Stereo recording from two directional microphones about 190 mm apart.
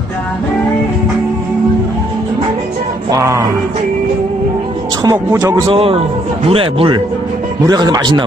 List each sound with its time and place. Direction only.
3.1 s music: 15° right (ahead or behind)
5.0 s speech: 15° right (ahead or behind)
5.7 s a man's voice: 30° right (ahead or behind)